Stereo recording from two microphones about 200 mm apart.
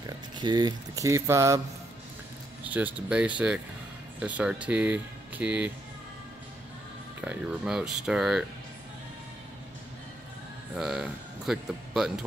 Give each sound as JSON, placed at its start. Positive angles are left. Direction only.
{"t": 0.0, "sound": "speech", "side_deg": -20}
{"t": 2.7, "sound": "speech", "side_deg": -5}
{"t": 7.2, "sound": "speech", "side_deg": -5}
{"t": 10.8, "sound": "speech", "side_deg": 0}